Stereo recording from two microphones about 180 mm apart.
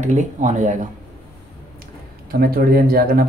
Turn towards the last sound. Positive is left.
turn(degrees=-55)  # may be behind; listen again after turning